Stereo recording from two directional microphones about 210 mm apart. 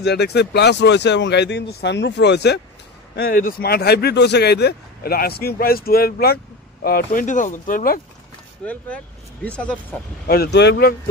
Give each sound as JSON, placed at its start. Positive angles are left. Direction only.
{"t": 0.0, "sound": "speech", "side_deg": 50}
{"t": 8.6, "sound": "speech", "side_deg": 5}
{"t": 10.2, "sound": "speech", "side_deg": 45}